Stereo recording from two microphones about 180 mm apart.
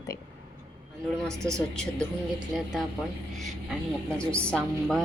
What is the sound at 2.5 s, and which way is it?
Speech, centre (ahead or behind).